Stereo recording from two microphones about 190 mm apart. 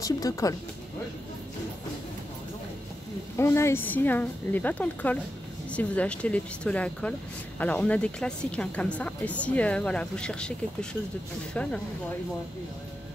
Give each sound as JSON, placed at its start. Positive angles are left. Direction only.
{"t": 0.0, "sound": "speech", "side_deg": 15}
{"t": 3.3, "sound": "speech", "side_deg": 15}